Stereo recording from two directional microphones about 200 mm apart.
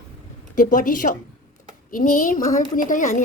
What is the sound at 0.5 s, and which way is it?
A woman's voice, 40° left (ahead or behind).